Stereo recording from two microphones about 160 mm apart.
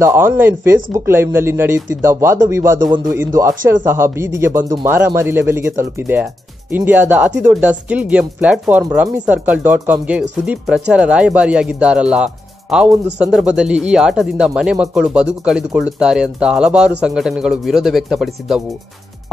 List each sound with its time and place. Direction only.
0.0 s speech: 15° right (ahead or behind)